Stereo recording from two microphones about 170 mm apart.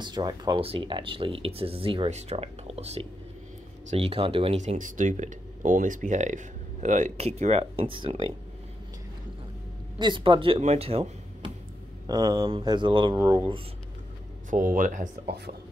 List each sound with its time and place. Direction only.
0.0 s speech: 25° right (ahead or behind)
9.9 s speech: 30° right (ahead or behind)
12.1 s speech: 25° right (ahead or behind)
14.8 s speech: 50° right (ahead or behind)
15.2 s speech: 75° right (ahead or behind)